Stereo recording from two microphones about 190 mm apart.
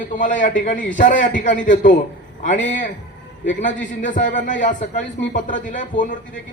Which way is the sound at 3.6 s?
45° left (ahead or behind).